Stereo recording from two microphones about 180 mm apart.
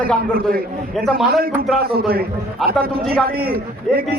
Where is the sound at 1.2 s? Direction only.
55° right (ahead or behind).